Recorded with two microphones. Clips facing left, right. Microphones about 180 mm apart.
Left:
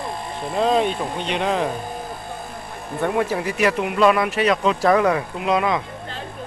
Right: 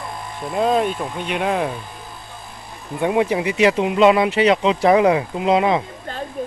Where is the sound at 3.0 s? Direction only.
15° right (ahead or behind).